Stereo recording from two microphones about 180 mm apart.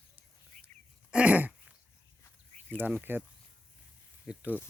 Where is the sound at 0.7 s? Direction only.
40° right (ahead or behind).